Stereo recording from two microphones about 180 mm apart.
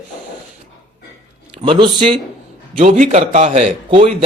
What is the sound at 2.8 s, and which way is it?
A man's voice, 40° right (ahead or behind).